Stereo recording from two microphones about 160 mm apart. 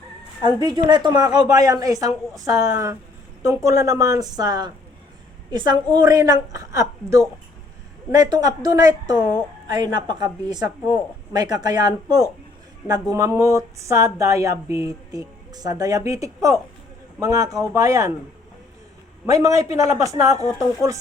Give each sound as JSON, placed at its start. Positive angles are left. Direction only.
{"t": 0.4, "sound": "speech", "side_deg": -25}
{"t": 19.2, "sound": "speech", "side_deg": -20}